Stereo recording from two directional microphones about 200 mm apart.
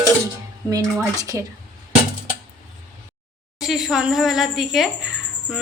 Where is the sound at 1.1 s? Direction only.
15° right (ahead or behind).